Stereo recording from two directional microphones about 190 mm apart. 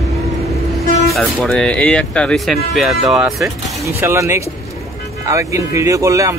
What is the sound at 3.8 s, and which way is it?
Speech, 15° right (ahead or behind).